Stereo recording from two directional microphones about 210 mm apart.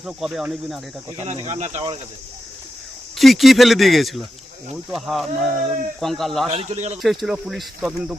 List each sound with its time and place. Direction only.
0.0 s speech: centre (ahead or behind)
1.2 s speech: 35° right (ahead or behind)
3.2 s speech: centre (ahead or behind)
6.5 s speech: 30° right (ahead or behind)
7.0 s speech: centre (ahead or behind)